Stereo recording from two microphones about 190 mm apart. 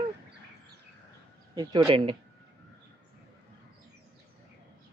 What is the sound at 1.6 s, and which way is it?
Speech, 25° right (ahead or behind).